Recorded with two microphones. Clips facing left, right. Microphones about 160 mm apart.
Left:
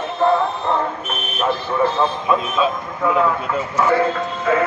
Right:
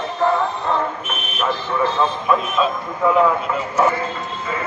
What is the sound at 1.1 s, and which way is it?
Speech, 35° left (ahead or behind).